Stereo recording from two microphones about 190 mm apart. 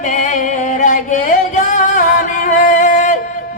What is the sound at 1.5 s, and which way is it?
Music, 45° left (ahead or behind).